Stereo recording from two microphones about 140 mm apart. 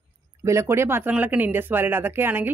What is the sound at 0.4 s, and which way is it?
Speech, 20° right (ahead or behind).